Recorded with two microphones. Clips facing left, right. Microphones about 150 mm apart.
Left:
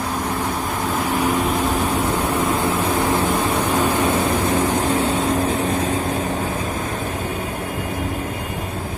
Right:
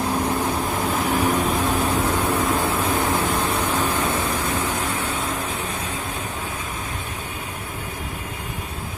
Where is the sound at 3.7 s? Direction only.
15° left (ahead or behind).